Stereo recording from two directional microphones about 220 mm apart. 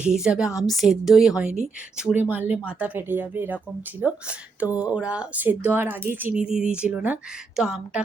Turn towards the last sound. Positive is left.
turn(degrees=-5)  # may be behind; listen again after turning